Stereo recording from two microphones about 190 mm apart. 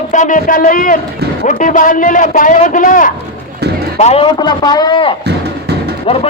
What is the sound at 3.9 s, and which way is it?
Speech, 35° left (ahead or behind).